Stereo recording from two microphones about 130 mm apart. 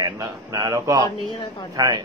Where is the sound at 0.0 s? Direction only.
25° right (ahead or behind).